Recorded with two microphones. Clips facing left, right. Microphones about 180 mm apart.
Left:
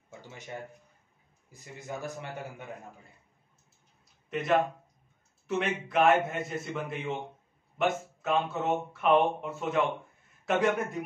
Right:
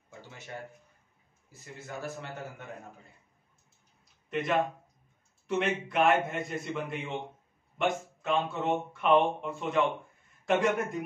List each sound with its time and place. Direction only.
1.5 s a man's voice: 15° left (ahead or behind)
4.3 s speech: centre (ahead or behind)